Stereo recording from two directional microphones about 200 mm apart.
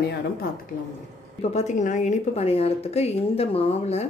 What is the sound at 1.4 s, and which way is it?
Speech, 35° left (ahead or behind).